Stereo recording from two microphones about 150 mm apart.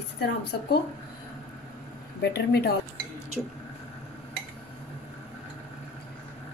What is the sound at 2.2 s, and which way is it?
Speech, 90° left.